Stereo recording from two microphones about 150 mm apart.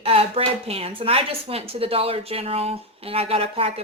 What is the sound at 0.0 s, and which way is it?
A woman's voice, 40° right (ahead or behind).